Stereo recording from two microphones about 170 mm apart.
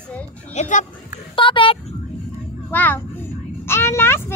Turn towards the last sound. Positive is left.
turn(degrees=15)  # may be behind; listen again after turning